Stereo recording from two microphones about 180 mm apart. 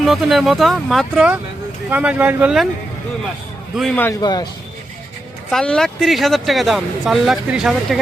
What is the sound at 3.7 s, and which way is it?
Speech, centre (ahead or behind).